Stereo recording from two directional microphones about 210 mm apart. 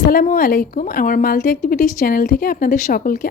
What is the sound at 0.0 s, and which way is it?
A woman's voice, 45° left (ahead or behind).